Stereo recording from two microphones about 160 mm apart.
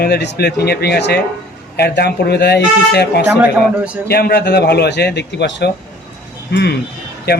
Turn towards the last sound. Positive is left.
turn(degrees=80)